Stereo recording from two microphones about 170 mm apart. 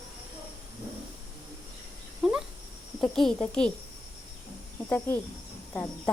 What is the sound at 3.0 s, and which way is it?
Speech, centre (ahead or behind).